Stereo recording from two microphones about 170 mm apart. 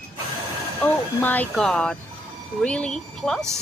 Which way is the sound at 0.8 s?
10° left (ahead or behind).